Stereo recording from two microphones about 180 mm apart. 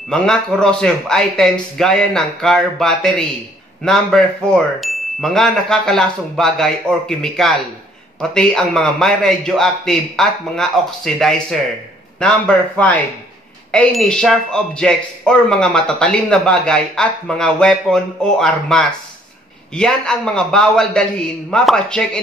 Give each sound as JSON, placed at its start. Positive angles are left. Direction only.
{"t": 0.1, "sound": "speech", "side_deg": 5}